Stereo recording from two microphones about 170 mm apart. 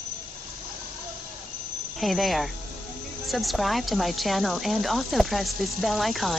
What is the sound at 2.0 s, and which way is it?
Speech, centre (ahead or behind).